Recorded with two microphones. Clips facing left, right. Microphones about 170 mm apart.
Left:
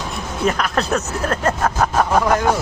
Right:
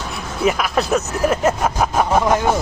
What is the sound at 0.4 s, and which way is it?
Speech, 5° right (ahead or behind).